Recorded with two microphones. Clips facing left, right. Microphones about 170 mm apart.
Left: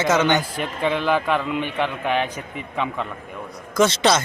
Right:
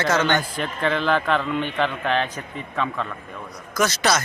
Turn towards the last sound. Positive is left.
turn(degrees=25)  # may be behind; listen again after turning